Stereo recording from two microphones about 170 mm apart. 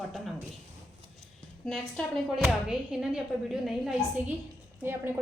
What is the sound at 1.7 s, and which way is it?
A woman's voice, centre (ahead or behind).